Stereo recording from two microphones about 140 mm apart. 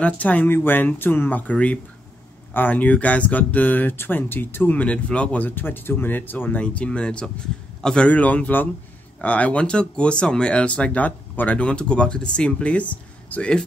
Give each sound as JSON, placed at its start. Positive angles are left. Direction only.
{"t": 0.0, "sound": "speech", "side_deg": 10}